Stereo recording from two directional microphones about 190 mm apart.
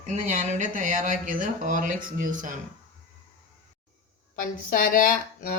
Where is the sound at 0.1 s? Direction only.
40° right (ahead or behind).